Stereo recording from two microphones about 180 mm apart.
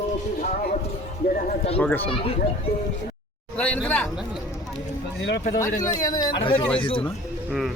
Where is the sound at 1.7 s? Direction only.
10° left (ahead or behind).